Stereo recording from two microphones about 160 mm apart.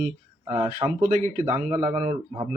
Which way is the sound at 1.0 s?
50° right (ahead or behind).